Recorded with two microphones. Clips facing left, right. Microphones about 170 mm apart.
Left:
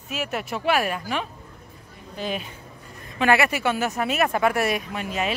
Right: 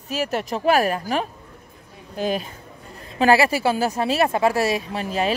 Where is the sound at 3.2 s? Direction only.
30° right (ahead or behind).